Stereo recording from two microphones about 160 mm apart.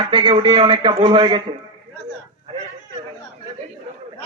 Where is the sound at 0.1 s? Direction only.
30° right (ahead or behind).